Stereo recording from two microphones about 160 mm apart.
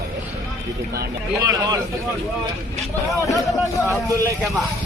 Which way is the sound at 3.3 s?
Centre (ahead or behind).